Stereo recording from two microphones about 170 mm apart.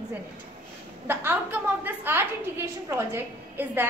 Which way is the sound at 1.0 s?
10° right (ahead or behind).